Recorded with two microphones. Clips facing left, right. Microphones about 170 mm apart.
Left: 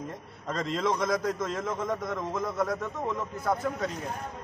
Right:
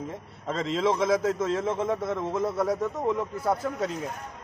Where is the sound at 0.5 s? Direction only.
25° right (ahead or behind).